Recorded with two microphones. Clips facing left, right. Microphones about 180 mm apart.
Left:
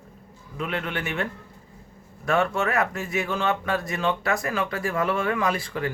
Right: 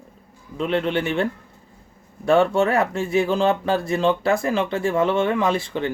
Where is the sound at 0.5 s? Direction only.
30° right (ahead or behind).